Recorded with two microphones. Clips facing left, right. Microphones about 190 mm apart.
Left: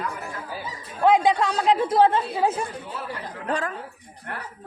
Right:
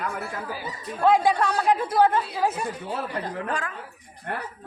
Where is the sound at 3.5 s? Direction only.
35° left (ahead or behind).